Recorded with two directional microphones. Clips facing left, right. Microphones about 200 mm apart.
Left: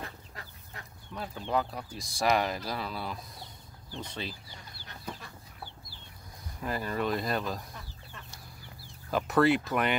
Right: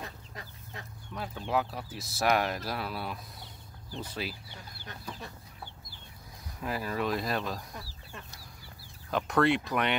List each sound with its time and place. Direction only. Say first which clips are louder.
0.0 s chicken: even; 20° right (ahead or behind)
1.1 s speech: even; centre (ahead or behind)
6.6 s speech: even; centre (ahead or behind)
9.1 s speech: left 2 dB; centre (ahead or behind)